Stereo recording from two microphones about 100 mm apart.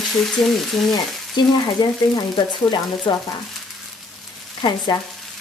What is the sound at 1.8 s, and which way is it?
Speech, 45° left (ahead or behind).